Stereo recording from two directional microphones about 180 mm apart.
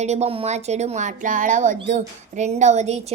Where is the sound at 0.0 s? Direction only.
40° right (ahead or behind).